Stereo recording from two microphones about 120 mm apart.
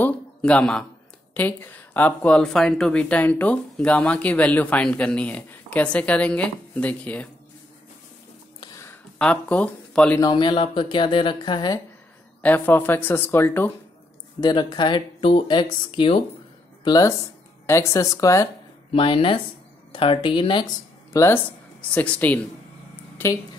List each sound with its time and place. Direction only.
0.0 s a sound: 10° left (ahead or behind)
1.3 s speech: 15° left (ahead or behind)
9.2 s speech: 10° left (ahead or behind)
10.2 s speech: 40° left (ahead or behind)
12.4 s speech: 15° left (ahead or behind)
14.4 s speech: 35° left (ahead or behind)
16.8 s speech: 30° left (ahead or behind)
18.9 s speech: 50° left (ahead or behind)
21.1 s speech: 25° left (ahead or behind)
21.9 s speech: 10° left (ahead or behind)